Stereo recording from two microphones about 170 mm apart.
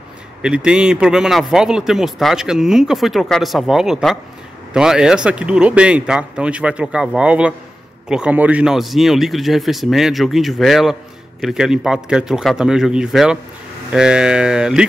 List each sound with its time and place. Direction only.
0.4 s speech: 5° right (ahead or behind)